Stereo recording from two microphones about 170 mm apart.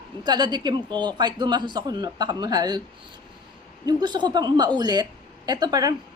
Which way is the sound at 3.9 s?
25° right (ahead or behind).